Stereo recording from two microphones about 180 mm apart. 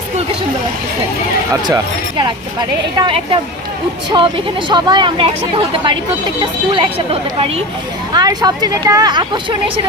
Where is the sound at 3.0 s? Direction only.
30° right (ahead or behind).